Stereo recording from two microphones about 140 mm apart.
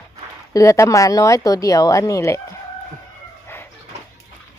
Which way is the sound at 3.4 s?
15° left (ahead or behind).